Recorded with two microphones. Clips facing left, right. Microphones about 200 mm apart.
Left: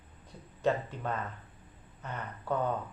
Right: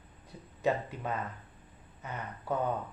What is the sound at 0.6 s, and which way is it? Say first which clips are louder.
Speech: left 1 dB; 5° right (ahead or behind).